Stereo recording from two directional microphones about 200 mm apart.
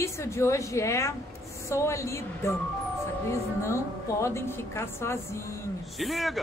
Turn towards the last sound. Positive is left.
turn(degrees=0)  # may be behind; listen again after turning